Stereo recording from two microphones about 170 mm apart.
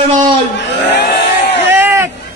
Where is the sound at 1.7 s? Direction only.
15° right (ahead or behind).